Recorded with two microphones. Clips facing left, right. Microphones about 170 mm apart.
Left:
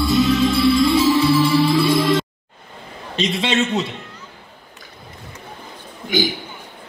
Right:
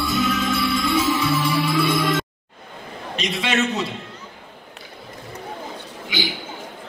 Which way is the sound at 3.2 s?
25° left (ahead or behind).